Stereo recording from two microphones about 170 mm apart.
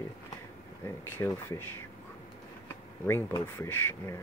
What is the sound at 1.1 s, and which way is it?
Speech, 15° left (ahead or behind).